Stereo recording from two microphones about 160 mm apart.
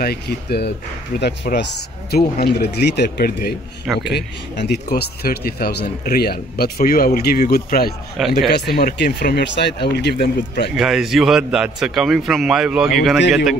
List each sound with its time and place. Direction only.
0.0 s speech: 80° left
4.1 s speech: 90° left
4.9 s speech: 75° left (ahead or behind)
8.5 s speech: 85° left
10.8 s a man's voice: centre (ahead or behind)